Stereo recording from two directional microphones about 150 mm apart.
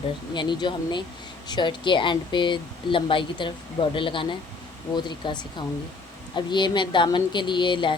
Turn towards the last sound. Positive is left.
turn(degrees=30)  # may be behind; listen again after turning